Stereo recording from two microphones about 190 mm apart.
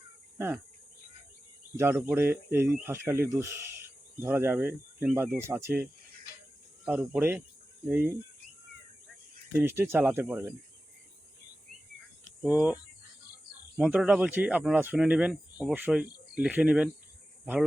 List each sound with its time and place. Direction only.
0.3 s cricket: 10° right (ahead or behind)
1.7 s speech: 10° right (ahead or behind)
9.6 s speech: 10° right (ahead or behind)
12.4 s speech: 5° right (ahead or behind)